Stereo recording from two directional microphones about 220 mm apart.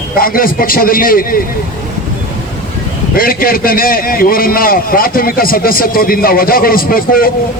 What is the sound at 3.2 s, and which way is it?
A man's voice, 40° left (ahead or behind).